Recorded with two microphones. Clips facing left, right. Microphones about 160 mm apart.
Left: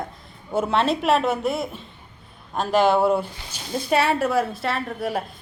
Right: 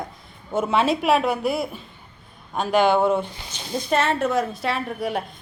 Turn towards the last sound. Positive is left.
turn(degrees=0)  # may be behind; listen again after turning